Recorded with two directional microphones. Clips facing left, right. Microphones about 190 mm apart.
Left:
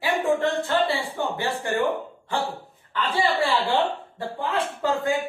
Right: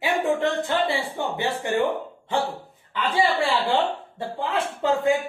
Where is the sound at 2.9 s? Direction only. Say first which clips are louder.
Right 2 dB; 15° right (ahead or behind).